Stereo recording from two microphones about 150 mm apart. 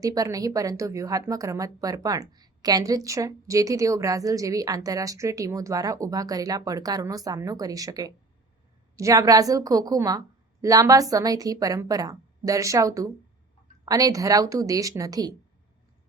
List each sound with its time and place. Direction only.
0.0 s a woman's voice: 20° right (ahead or behind)